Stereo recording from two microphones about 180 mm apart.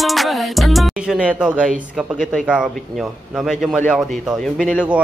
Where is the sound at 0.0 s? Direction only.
Centre (ahead or behind).